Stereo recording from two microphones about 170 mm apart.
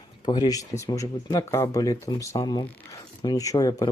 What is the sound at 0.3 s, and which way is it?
Speech, 25° left (ahead or behind).